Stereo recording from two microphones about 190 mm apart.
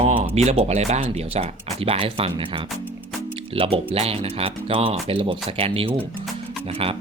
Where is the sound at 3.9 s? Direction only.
30° right (ahead or behind).